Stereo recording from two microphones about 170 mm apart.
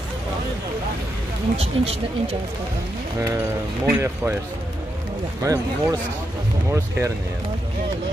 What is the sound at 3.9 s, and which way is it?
Speech, 15° right (ahead or behind).